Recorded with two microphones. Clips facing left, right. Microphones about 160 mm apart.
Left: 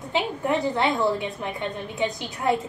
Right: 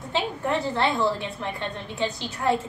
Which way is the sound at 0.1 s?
15° left (ahead or behind).